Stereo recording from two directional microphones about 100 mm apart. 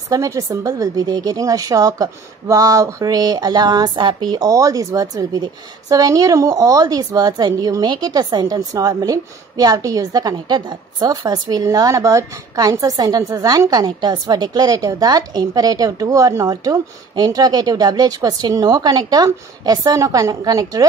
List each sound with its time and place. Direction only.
0.1 s speech: 35° right (ahead or behind)
11.6 s speech: 35° right (ahead or behind)
16.4 s speech: 45° right (ahead or behind)